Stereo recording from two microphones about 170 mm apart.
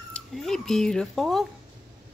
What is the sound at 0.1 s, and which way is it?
Speech, centre (ahead or behind).